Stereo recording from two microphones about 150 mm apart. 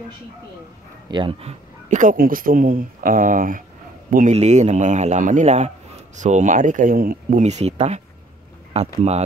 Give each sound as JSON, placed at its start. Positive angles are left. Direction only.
{"t": 1.1, "sound": "speech", "side_deg": -40}
{"t": 4.1, "sound": "a man's voice", "side_deg": -55}